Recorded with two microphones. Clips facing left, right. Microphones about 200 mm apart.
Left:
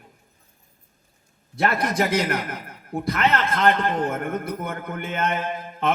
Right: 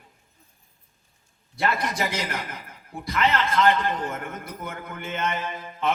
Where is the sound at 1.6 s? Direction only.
50° left (ahead or behind).